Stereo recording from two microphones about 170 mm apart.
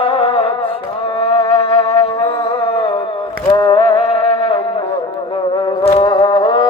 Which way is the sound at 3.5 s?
30° left (ahead or behind).